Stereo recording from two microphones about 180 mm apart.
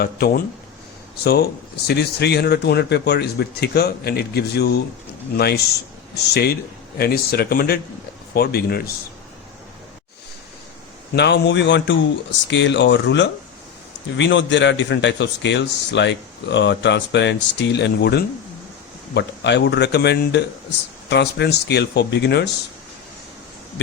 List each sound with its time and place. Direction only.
0.0 s speech: 60° left (ahead or behind)
6.3 s speech: 60° left (ahead or behind)
11.1 s a man's voice: 70° left (ahead or behind)